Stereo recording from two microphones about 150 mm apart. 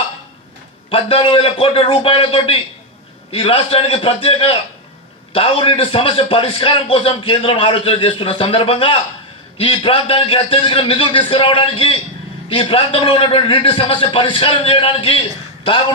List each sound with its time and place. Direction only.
0.8 s a man's voice: 40° left (ahead or behind)